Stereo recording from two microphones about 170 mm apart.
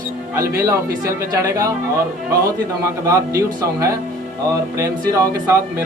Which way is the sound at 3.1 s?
20° right (ahead or behind).